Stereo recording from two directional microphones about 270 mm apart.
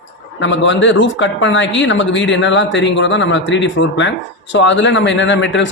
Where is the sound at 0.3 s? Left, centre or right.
Left.